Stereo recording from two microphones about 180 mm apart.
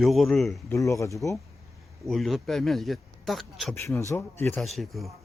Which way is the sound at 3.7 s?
15° left (ahead or behind).